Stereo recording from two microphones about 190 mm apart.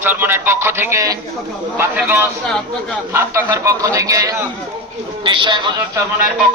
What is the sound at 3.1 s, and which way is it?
A man's voice, 15° right (ahead or behind).